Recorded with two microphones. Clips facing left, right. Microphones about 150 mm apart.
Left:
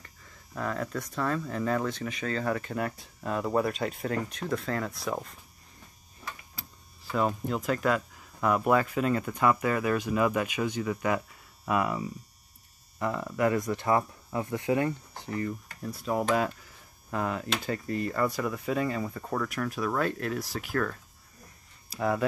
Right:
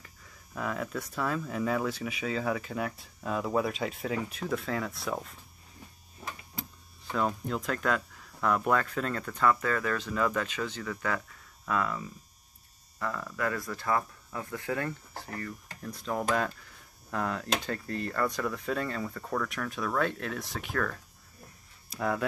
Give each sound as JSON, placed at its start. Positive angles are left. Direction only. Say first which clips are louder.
{"t": 0.0, "sound": "speech", "louder": "left 1 dB", "side_deg": -5}
{"t": 7.1, "sound": "speech", "louder": "left 2 dB", "side_deg": 5}
{"t": 15.8, "sound": "speech", "louder": "left 3 dB", "side_deg": 5}